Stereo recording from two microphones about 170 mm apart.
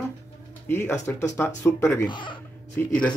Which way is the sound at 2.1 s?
30° left (ahead or behind).